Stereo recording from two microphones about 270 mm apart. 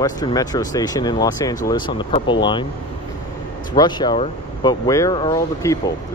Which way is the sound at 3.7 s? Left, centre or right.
Centre.